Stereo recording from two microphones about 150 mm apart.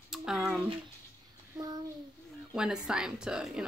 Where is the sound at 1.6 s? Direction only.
25° right (ahead or behind).